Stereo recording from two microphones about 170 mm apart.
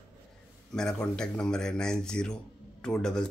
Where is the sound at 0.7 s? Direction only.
5° left (ahead or behind).